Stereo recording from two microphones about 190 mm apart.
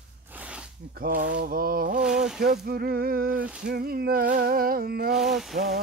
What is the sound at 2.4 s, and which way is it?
Speech, 55° right (ahead or behind).